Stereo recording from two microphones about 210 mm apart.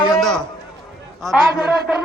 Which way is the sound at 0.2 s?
Centre (ahead or behind).